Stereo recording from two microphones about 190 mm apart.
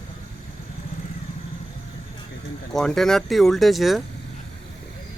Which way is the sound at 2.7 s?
Centre (ahead or behind).